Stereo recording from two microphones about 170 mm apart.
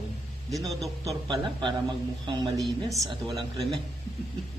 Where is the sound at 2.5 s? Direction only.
Centre (ahead or behind).